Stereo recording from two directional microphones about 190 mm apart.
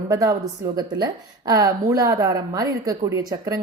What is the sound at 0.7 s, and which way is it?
A woman's voice, 20° right (ahead or behind).